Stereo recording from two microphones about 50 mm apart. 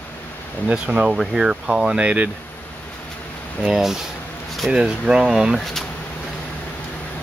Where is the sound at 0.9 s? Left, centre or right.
Centre.